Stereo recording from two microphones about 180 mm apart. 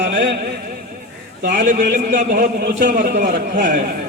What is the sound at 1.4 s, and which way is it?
A man's voice, 55° right (ahead or behind).